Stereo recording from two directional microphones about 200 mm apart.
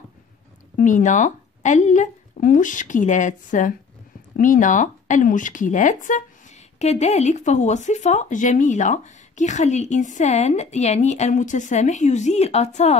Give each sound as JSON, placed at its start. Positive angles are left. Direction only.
{"t": 0.7, "sound": "speech", "side_deg": 40}